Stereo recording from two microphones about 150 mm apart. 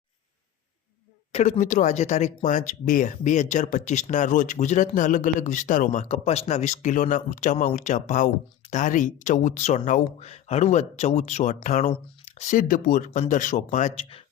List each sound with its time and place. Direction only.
1.3 s speech: 50° left (ahead or behind)